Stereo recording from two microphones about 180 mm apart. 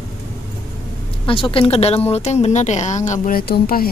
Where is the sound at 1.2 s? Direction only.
30° left (ahead or behind); by 3.8 s 55° left (ahead or behind).